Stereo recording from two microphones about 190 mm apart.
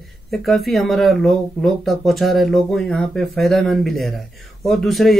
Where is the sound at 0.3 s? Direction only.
Centre (ahead or behind).